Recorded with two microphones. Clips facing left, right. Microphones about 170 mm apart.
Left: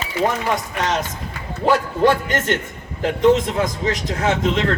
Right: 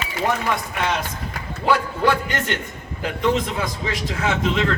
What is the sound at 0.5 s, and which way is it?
A man's voice, 45° left (ahead or behind).